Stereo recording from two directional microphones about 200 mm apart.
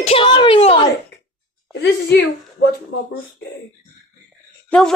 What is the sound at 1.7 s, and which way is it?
Speech, 60° left (ahead or behind).